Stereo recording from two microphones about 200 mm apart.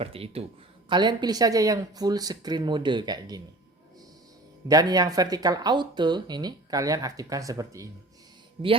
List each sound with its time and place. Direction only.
0.0 s speech: 30° right (ahead or behind)
4.7 s speech: 20° right (ahead or behind)